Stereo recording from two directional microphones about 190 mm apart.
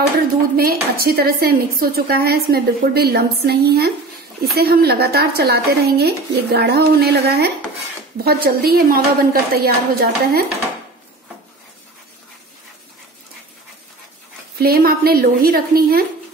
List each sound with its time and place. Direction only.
0.6 s a woman's voice: 55° right (ahead or behind)
14.6 s a woman's voice: 50° right (ahead or behind)